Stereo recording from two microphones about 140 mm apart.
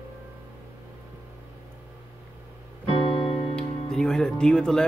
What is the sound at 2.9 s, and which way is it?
Music, 40° left (ahead or behind).